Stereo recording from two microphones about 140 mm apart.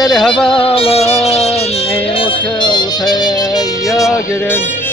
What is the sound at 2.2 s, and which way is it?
Music, 35° left (ahead or behind).